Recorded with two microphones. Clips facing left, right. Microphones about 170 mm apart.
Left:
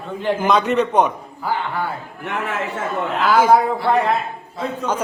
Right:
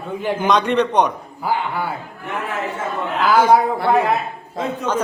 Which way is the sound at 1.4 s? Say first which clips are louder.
Right 1 dB; 10° right (ahead or behind).